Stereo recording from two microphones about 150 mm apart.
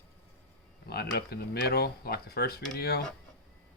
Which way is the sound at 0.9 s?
90° left.